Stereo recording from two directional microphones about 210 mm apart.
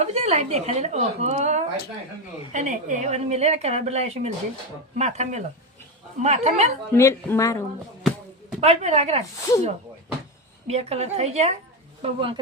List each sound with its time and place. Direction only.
0.0 s a woman's voice: 30° right (ahead or behind)
6.9 s speech: 10° left (ahead or behind)
8.6 s a woman's voice: 30° right (ahead or behind)
9.5 s speech: 15° left (ahead or behind)
10.7 s a woman's voice: 30° right (ahead or behind)